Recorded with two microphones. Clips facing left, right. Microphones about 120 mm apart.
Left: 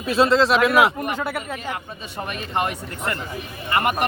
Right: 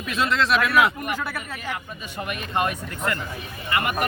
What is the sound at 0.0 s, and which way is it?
Speech, 30° left (ahead or behind).